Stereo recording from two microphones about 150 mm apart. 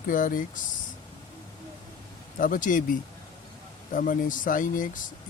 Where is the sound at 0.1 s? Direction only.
65° left (ahead or behind).